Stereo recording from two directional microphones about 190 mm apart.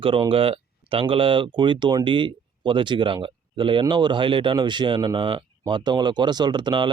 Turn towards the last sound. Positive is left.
turn(degrees=-25)  # may be behind; listen again after turning